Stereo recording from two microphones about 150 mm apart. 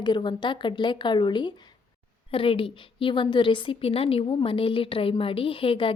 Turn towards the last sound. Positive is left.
turn(degrees=35)  # may be behind; listen again after turning